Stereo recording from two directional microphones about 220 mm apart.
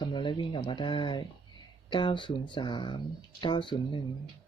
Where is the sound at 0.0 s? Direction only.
20° left (ahead or behind).